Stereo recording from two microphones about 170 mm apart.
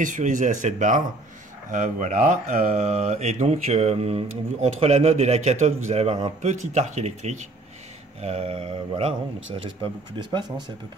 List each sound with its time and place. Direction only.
0.0 s speech: 50° right (ahead or behind)